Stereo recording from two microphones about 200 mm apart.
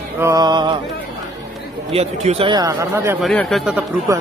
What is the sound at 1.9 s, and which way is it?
Speech, 30° right (ahead or behind).